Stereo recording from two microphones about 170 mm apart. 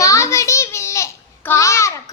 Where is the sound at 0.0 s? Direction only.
20° left (ahead or behind).